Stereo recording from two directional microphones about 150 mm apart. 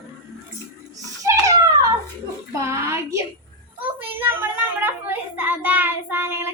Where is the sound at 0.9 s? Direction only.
20° right (ahead or behind).